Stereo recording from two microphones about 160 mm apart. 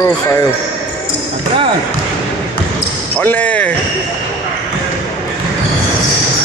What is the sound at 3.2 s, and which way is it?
Speech, 10° left (ahead or behind).